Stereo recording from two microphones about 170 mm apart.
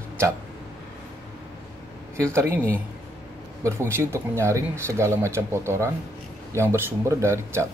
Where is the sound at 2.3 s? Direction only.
15° right (ahead or behind).